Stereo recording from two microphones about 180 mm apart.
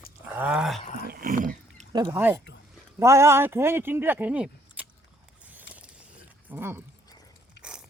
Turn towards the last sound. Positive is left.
turn(degrees=-15)  # may be behind; listen again after turning